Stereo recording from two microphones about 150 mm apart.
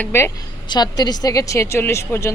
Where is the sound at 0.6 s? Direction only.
30° left (ahead or behind).